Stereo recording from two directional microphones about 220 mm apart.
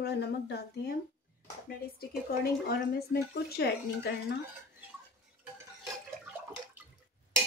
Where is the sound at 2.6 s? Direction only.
45° left (ahead or behind).